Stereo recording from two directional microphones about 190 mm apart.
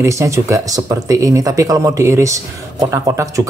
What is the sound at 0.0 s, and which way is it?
Speech, 15° right (ahead or behind).